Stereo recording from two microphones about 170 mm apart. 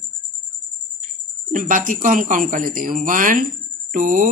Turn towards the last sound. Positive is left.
turn(degrees=-50)  # may be behind; listen again after turning